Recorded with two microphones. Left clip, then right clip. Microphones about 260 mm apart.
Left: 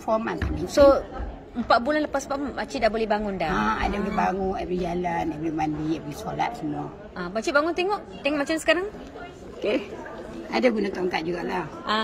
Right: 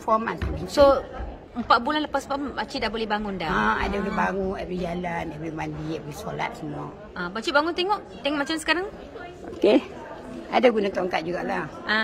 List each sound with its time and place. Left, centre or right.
0.0 s speech: centre
1.7 s a woman's voice: centre
3.5 s speech: centre
7.2 s a woman's voice: centre
9.6 s speech: right
10.5 s speech: centre